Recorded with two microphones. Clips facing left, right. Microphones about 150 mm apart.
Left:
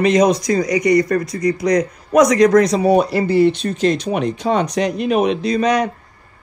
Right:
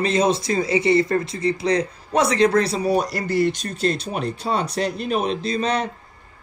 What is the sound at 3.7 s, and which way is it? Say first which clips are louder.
Speech: left 6 dB; 35° right (ahead or behind).